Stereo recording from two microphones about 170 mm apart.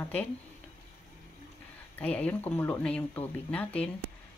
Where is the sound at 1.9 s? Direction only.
10° left (ahead or behind).